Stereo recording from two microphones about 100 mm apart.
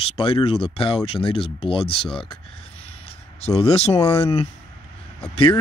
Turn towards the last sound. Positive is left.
turn(degrees=75)  # may be behind; listen again after turning